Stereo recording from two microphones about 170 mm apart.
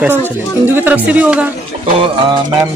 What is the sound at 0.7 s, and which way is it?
Speech, 10° right (ahead or behind).